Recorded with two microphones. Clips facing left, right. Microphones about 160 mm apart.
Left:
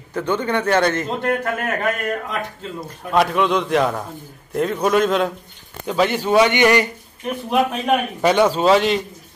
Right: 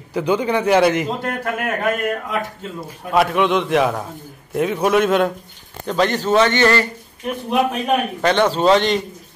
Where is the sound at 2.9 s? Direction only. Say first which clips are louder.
Right 1 dB; 5° right (ahead or behind); by 6.9 s 15° left (ahead or behind).